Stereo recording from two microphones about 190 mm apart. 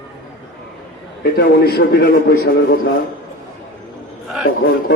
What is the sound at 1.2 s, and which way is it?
A man's voice, 55° left (ahead or behind).